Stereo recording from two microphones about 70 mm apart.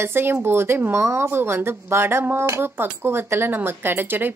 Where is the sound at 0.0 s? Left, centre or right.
Right.